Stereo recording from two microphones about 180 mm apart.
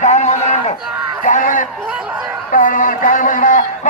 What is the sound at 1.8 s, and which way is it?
Speech, 5° right (ahead or behind).